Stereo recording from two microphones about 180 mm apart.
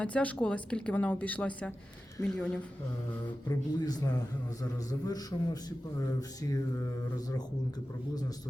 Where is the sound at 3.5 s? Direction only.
20° left (ahead or behind).